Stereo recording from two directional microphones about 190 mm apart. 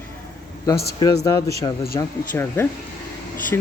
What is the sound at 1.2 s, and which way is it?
Speech, 15° left (ahead or behind).